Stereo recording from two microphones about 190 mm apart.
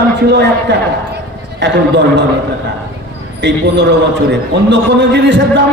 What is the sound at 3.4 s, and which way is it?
A man's voice, 65° right (ahead or behind).